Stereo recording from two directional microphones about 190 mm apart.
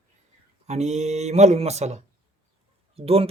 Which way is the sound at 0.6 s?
35° right (ahead or behind).